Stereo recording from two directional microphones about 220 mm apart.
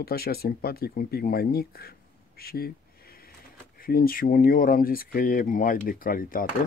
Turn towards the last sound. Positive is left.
turn(degrees=40)  # may be behind; listen again after turning